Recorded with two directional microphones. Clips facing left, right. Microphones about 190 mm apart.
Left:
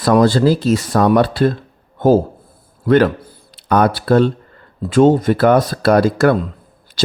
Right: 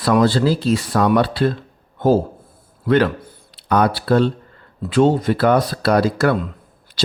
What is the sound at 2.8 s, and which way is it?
Speech, 45° left (ahead or behind).